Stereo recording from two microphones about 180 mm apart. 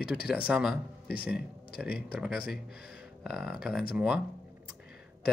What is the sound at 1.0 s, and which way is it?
Speech, 60° left (ahead or behind).